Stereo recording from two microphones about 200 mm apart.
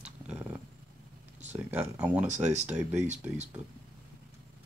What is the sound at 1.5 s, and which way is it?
Speech, 10° right (ahead or behind).